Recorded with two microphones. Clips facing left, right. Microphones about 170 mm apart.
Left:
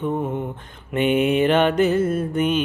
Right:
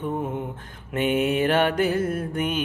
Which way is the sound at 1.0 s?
65° left (ahead or behind).